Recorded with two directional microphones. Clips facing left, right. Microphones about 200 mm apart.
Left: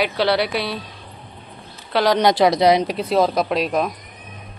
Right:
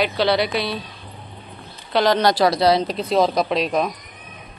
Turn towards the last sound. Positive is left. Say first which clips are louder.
# even
turn(degrees=5)  # may be behind; listen again after turning